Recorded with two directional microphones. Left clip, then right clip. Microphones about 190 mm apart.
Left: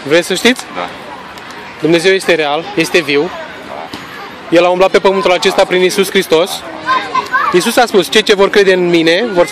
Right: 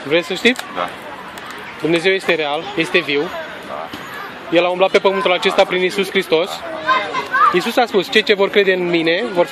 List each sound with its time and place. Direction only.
0.1 s speech: 30° left (ahead or behind)
1.9 s speech: 25° left (ahead or behind)
4.5 s speech: 30° left (ahead or behind)